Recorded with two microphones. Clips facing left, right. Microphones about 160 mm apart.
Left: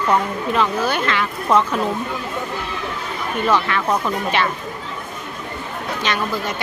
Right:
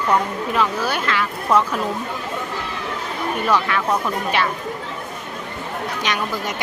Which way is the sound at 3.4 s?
5° right (ahead or behind).